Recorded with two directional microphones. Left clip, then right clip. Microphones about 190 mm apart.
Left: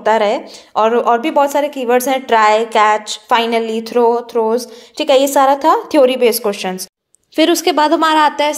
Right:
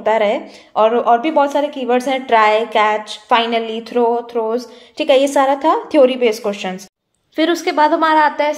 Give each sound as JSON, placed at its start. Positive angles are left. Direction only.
{"t": 0.0, "sound": "a woman's voice", "side_deg": 20}